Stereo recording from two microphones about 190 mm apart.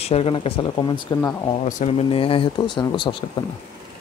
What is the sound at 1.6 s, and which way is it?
Speech, 35° left (ahead or behind).